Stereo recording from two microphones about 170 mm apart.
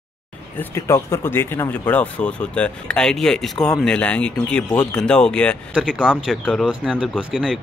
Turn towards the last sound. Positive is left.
turn(degrees=-5)  # may be behind; listen again after turning